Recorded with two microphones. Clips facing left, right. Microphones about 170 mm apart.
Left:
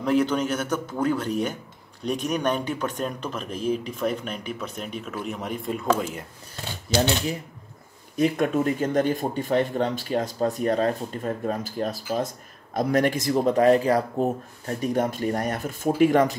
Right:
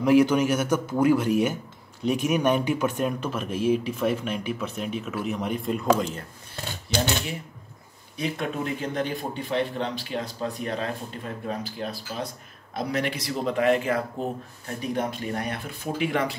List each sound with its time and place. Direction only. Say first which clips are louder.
0.0 s speech: right 3 dB; 10° right (ahead or behind); by 6.2 s 5° left (ahead or behind)
8.2 s speech: left 7 dB; 45° left (ahead or behind)